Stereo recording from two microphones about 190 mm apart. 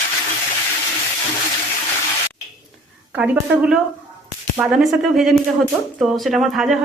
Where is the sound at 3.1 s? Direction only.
5° right (ahead or behind).